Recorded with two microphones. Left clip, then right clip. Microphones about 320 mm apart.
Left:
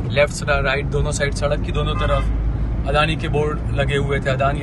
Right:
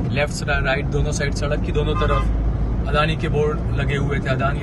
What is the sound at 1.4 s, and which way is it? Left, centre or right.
Speech, centre.